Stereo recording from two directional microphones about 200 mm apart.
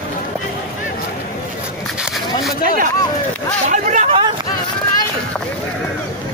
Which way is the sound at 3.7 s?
40° right (ahead or behind).